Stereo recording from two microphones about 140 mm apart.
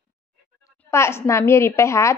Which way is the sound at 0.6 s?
20° left (ahead or behind).